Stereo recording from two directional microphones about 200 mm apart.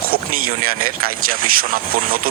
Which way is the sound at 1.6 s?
45° right (ahead or behind).